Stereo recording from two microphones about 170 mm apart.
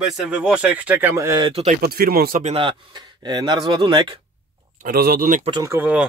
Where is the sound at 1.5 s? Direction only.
40° right (ahead or behind).